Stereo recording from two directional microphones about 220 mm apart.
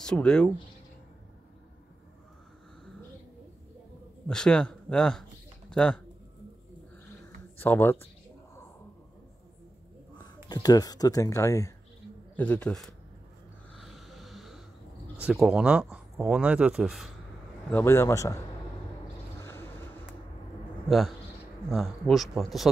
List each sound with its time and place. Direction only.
0.0 s speech: 5° left (ahead or behind)
4.3 s speech: 5° left (ahead or behind)
7.5 s speech: 10° left (ahead or behind)
10.1 s speech: 15° left (ahead or behind)
13.7 s a sound: centre (ahead or behind)
15.2 s speech: 5° right (ahead or behind)
17.6 s speech: 10° left (ahead or behind)
21.6 s speech: centre (ahead or behind)